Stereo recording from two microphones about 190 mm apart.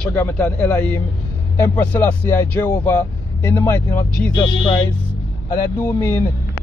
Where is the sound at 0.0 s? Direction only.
10° left (ahead or behind).